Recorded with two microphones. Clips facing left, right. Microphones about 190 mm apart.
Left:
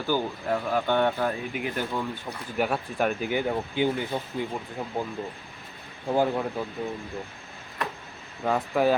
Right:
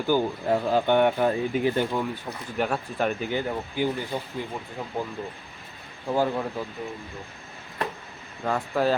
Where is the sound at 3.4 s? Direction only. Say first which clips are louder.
Left 1 dB; 20° left (ahead or behind).